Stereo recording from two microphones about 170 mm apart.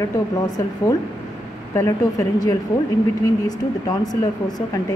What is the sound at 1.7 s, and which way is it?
Speech, 15° left (ahead or behind).